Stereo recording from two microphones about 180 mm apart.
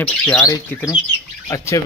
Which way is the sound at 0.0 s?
5° left (ahead or behind).